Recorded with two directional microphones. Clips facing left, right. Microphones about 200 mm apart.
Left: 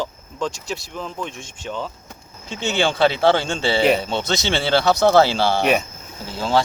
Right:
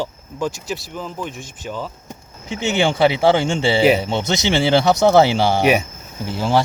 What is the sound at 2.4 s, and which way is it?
Speech, 20° right (ahead or behind).